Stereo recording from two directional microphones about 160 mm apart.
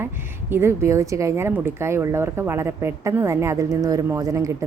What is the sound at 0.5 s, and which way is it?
A woman's voice, 15° right (ahead or behind).